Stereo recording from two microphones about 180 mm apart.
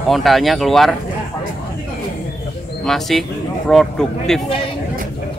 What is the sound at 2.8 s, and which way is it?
Speech, centre (ahead or behind).